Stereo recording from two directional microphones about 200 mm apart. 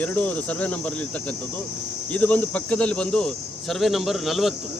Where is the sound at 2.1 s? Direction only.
5° left (ahead or behind).